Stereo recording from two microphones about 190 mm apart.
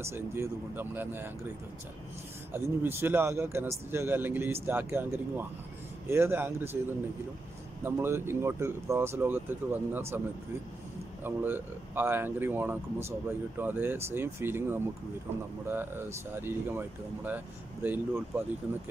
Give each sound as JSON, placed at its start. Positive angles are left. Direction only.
{"t": 0.0, "sound": "speech", "side_deg": -15}
{"t": 2.5, "sound": "speech", "side_deg": -10}
{"t": 11.2, "sound": "speech", "side_deg": -10}